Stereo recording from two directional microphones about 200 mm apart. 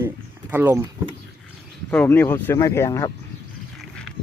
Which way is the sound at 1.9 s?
10° left (ahead or behind).